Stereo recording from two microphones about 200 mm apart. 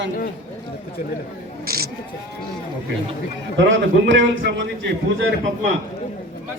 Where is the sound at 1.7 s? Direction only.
50° right (ahead or behind).